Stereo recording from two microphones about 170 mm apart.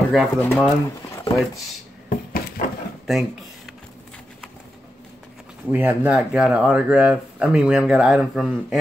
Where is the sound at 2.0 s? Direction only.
55° left (ahead or behind).